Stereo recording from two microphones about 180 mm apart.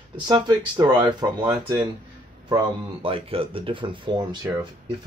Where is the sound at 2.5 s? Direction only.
30° right (ahead or behind).